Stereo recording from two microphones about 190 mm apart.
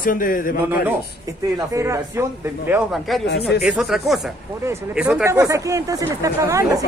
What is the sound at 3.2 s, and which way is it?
Speech, 60° left (ahead or behind).